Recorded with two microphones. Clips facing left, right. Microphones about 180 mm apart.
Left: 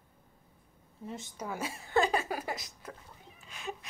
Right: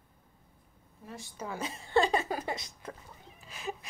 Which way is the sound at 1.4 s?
10° left (ahead or behind).